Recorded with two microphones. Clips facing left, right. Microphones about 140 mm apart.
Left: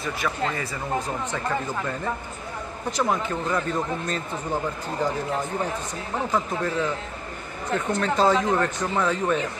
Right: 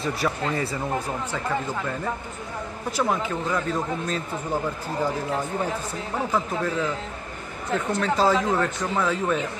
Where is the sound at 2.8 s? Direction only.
5° right (ahead or behind).